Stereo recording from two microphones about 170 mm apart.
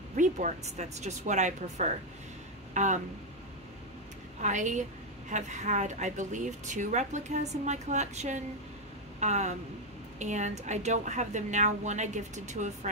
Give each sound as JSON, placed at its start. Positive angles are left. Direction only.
{"t": 0.1, "sound": "speech", "side_deg": -45}
{"t": 4.4, "sound": "speech", "side_deg": -45}